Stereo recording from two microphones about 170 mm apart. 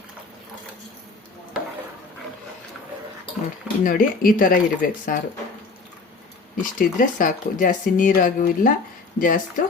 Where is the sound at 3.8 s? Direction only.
55° left (ahead or behind).